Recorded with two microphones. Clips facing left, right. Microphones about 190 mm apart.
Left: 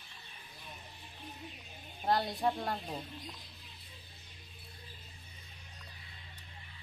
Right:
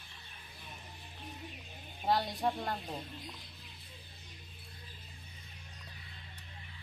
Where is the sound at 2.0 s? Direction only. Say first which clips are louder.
Left 1 dB; centre (ahead or behind).